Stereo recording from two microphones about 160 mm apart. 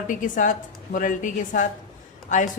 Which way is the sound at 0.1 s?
55° left (ahead or behind).